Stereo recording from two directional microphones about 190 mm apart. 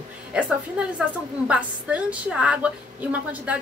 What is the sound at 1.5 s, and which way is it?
Speech, 5° right (ahead or behind).